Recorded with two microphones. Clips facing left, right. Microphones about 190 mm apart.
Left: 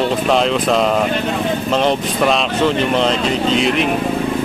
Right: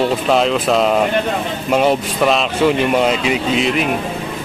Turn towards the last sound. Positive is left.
turn(degrees=0)  # may be behind; listen again after turning